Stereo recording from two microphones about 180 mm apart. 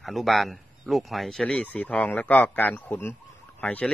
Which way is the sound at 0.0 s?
Centre (ahead or behind).